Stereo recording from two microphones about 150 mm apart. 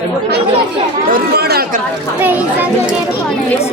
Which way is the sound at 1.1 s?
90° right.